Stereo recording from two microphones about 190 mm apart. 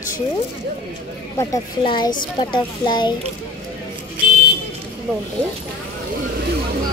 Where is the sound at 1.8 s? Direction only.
25° left (ahead or behind).